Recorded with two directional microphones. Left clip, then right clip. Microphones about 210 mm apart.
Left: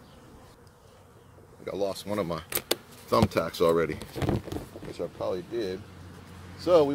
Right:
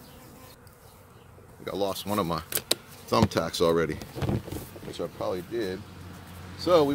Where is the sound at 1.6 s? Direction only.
25° right (ahead or behind).